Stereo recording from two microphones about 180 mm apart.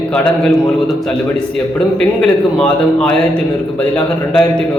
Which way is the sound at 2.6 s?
5° left (ahead or behind).